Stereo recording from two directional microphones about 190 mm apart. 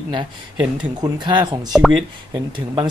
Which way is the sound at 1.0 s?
25° right (ahead or behind).